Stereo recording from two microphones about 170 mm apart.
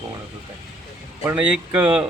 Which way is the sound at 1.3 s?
10° right (ahead or behind).